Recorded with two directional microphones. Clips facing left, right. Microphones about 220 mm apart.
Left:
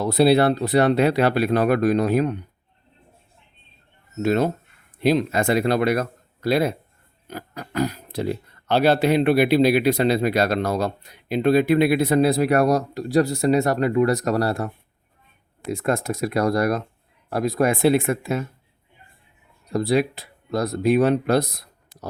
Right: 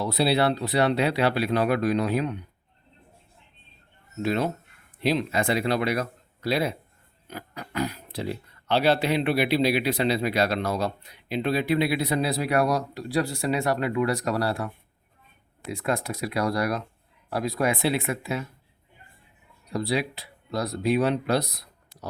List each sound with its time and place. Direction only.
0.0 s speech: 45° left (ahead or behind)
4.2 s speech: 45° left (ahead or behind)
19.7 s speech: 45° left (ahead or behind)